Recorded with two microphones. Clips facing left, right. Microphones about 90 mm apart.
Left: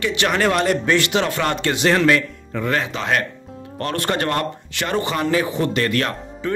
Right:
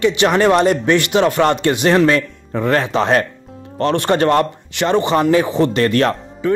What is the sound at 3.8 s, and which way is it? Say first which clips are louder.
Speech: right 7 dB; 25° right (ahead or behind).